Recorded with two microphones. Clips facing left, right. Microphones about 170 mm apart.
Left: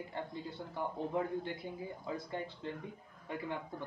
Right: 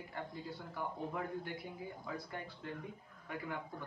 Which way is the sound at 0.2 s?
25° left (ahead or behind).